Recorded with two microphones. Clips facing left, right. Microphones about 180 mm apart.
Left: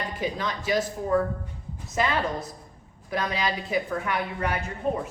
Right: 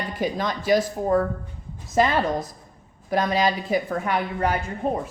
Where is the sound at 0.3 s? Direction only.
45° right (ahead or behind).